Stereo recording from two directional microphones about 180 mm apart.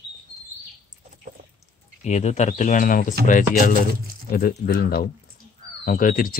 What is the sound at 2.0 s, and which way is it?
Speech, 40° left (ahead or behind).